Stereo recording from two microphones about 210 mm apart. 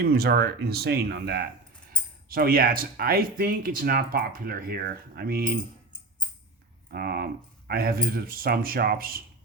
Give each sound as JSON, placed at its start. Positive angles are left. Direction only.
{"t": 0.0, "sound": "speech", "side_deg": -45}
{"t": 6.9, "sound": "speech", "side_deg": -45}